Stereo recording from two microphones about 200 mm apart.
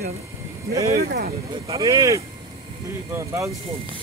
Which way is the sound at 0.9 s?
50° right (ahead or behind).